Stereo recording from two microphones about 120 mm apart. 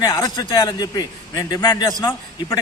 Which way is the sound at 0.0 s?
30° left (ahead or behind).